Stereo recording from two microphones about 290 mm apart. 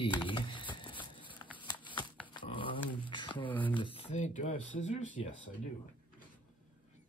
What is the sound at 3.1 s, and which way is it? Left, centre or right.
Speech, centre.